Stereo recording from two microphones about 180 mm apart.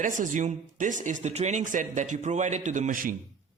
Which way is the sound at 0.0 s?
45° right (ahead or behind).